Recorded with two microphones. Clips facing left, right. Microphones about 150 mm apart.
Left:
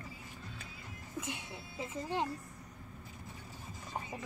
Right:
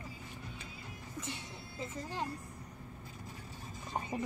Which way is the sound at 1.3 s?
15° left (ahead or behind).